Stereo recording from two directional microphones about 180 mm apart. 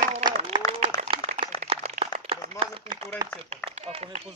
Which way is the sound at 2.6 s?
30° right (ahead or behind).